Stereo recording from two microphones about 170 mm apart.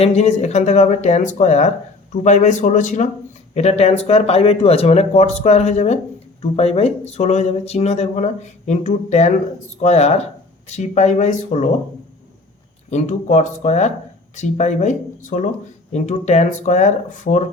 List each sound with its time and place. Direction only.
0.0 s speech: 40° left (ahead or behind)
12.9 s speech: 40° left (ahead or behind)